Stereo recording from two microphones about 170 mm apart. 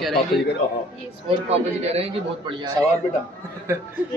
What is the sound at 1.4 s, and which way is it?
A man's voice, 35° right (ahead or behind).